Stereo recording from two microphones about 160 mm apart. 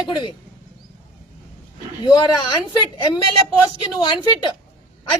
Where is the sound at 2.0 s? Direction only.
30° left (ahead or behind).